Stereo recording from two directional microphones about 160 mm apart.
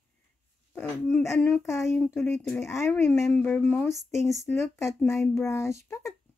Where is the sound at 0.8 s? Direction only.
10° left (ahead or behind).